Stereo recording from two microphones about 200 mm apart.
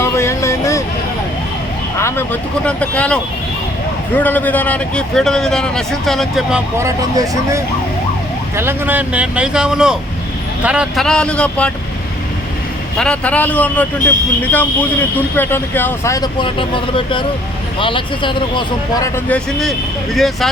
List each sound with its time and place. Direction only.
0.0 s vehicle: 15° left (ahead or behind)
2.0 s speech: 10° left (ahead or behind)
6.7 s speech: 15° right (ahead or behind); by 11.7 s 5° left (ahead or behind)
13.0 s speech: 5° left (ahead or behind)
20.1 s speech: centre (ahead or behind)